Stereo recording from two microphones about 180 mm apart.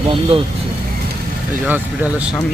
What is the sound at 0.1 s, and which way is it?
Speech, 30° right (ahead or behind).